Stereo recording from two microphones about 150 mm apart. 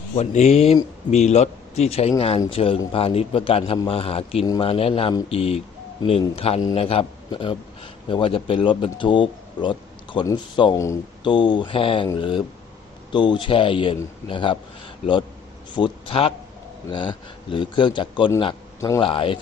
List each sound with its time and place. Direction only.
0.2 s speech: 50° left (ahead or behind)
15.7 s speech: 35° left (ahead or behind)
18.8 s speech: 20° left (ahead or behind)
19.0 s speech: 35° left (ahead or behind)